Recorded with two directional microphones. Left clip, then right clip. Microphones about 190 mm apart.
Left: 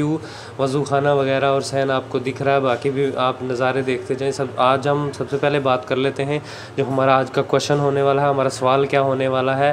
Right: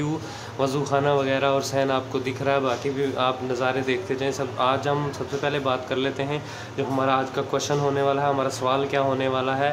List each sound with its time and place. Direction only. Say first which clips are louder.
0.6 s speech: left 4 dB; 20° left (ahead or behind)